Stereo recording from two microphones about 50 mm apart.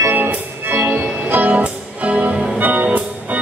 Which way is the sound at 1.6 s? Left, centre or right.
Right.